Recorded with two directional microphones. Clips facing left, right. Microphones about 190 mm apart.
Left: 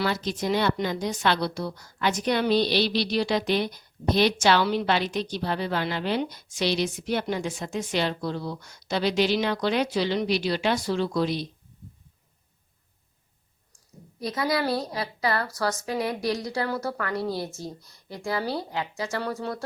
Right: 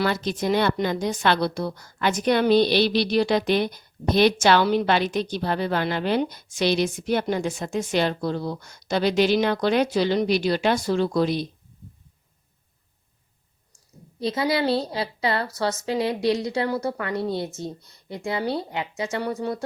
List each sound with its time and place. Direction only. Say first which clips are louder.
0.0 s a woman's voice: right 3 dB; 55° right (ahead or behind)
14.2 s a woman's voice: right 3 dB; 25° right (ahead or behind)